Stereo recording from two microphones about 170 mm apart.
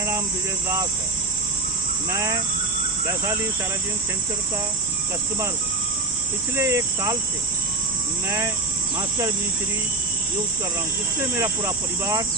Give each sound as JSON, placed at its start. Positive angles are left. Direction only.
{"t": 2.0, "sound": "speech", "side_deg": -20}
{"t": 6.5, "sound": "speech", "side_deg": -20}
{"t": 11.3, "sound": "speech", "side_deg": -20}